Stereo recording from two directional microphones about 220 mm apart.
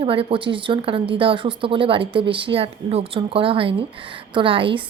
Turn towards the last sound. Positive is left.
turn(degrees=-25)  # may be behind; listen again after turning